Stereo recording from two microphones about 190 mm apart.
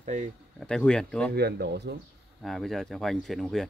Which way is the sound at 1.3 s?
60° right (ahead or behind).